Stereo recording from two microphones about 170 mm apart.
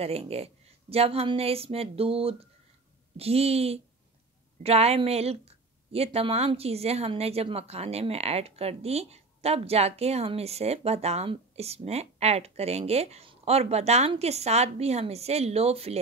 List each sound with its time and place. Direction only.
0.0 s a woman's voice: 35° right (ahead or behind)